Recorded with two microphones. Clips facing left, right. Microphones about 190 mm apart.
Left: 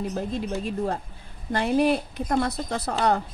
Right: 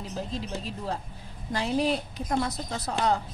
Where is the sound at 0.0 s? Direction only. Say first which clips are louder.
Left 6 dB; 55° left (ahead or behind).